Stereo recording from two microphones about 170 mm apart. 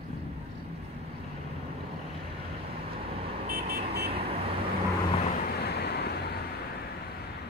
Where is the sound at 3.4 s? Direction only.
65° right (ahead or behind).